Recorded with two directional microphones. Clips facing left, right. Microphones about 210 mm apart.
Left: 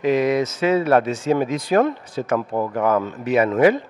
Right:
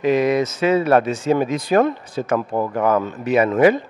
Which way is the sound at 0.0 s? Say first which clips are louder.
Right 1 dB; 10° right (ahead or behind).